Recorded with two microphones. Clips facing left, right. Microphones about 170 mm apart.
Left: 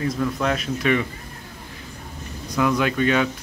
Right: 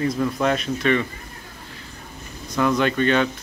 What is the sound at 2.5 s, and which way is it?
Speech, 5° left (ahead or behind).